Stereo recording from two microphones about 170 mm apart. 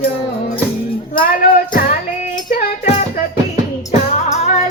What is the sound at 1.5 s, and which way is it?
Music, 55° left (ahead or behind).